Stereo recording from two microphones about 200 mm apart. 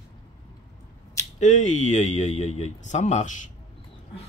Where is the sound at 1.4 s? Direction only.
35° left (ahead or behind).